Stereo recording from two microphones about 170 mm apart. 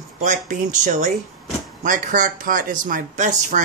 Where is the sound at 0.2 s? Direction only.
50° right (ahead or behind).